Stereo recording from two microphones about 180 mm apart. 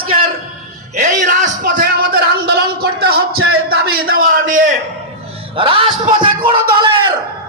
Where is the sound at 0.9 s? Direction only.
45° right (ahead or behind).